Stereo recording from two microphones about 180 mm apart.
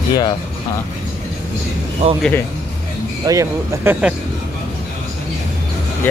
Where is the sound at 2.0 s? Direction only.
35° right (ahead or behind).